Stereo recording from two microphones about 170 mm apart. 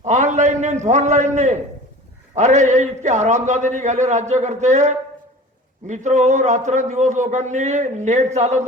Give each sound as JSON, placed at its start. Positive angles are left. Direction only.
{"t": 0.0, "sound": "a sound", "side_deg": -45}
{"t": 0.9, "sound": "a man's voice", "side_deg": -45}
{"t": 5.9, "sound": "a man's voice", "side_deg": -45}